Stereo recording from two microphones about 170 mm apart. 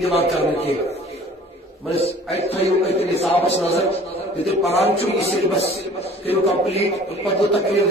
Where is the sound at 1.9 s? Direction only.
35° left (ahead or behind).